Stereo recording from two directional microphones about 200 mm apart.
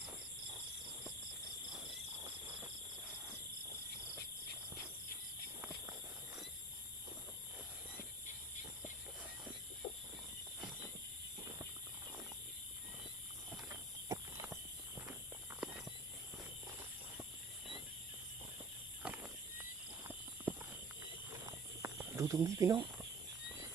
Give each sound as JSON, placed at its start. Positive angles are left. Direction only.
{"t": 13.7, "sound": "a sound", "side_deg": -15}
{"t": 15.6, "sound": "walk", "side_deg": -5}
{"t": 19.0, "sound": "horse", "side_deg": -10}
{"t": 20.5, "sound": "clip-clop", "side_deg": -5}
{"t": 21.4, "sound": "snake", "side_deg": -15}